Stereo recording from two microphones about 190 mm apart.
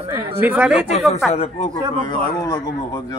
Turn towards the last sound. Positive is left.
turn(degrees=20)  # may be behind; listen again after turning